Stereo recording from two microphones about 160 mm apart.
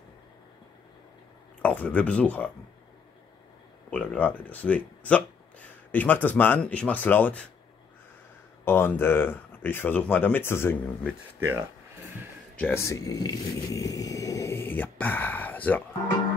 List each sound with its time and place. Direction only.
1.6 s speech: 10° left (ahead or behind)
3.9 s speech: 10° left (ahead or behind)
8.6 s speech: 15° left (ahead or behind)
11.3 s speech: 15° right (ahead or behind)
12.5 s speech: 15° left (ahead or behind)